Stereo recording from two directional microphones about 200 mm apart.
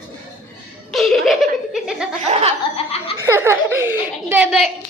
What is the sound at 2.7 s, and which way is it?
Speech, 30° left (ahead or behind).